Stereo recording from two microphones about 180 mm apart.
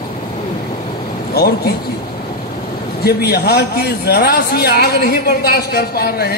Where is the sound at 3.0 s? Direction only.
65° left (ahead or behind).